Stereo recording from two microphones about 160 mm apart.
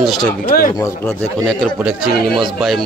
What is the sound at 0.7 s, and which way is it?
Speech, 20° left (ahead or behind).